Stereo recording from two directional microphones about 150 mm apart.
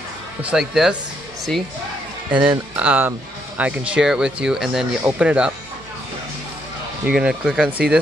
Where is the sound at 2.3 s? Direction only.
35° right (ahead or behind).